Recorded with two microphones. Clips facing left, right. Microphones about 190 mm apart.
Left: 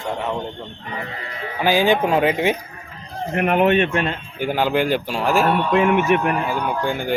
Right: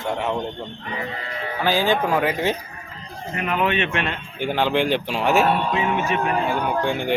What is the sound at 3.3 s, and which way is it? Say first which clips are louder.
Speech: left 6 dB; 60° left (ahead or behind).